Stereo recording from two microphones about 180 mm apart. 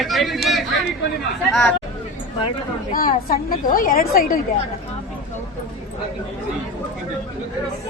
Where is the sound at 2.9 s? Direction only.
50° left (ahead or behind).